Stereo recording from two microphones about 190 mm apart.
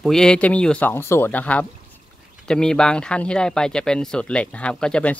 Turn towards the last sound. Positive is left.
turn(degrees=5)  # may be behind; listen again after turning